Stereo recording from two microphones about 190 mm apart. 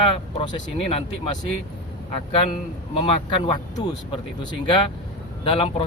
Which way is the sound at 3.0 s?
25° left (ahead or behind).